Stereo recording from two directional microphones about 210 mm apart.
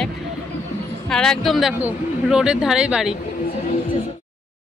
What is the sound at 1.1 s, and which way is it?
A woman's voice, 5° left (ahead or behind).